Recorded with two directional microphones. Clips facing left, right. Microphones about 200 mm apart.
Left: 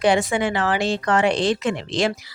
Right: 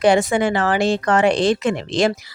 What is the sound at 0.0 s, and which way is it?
Speech, 45° right (ahead or behind).